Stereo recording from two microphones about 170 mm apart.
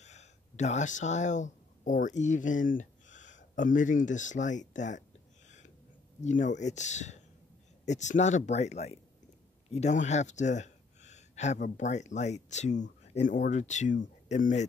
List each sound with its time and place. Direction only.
0.0 s speech: 40° left (ahead or behind)
6.2 s speech: 45° left (ahead or behind)